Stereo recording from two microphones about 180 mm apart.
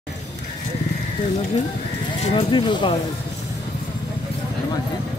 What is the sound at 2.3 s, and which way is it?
Speech, 25° left (ahead or behind).